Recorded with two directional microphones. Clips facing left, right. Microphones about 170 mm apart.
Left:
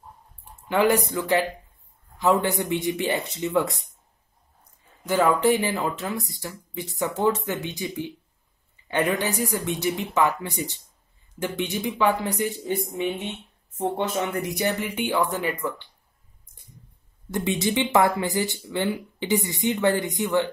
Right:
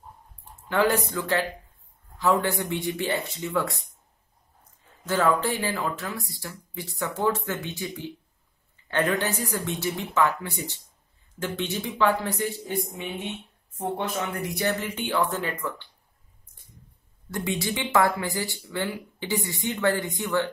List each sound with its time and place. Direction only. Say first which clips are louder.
0.7 s speech: left 3 dB; 15° left (ahead or behind)
5.0 s speech: left 3 dB; 15° left (ahead or behind)
13.7 s speech: left 3 dB; 25° left (ahead or behind)
17.3 s speech: left 4 dB; 20° left (ahead or behind)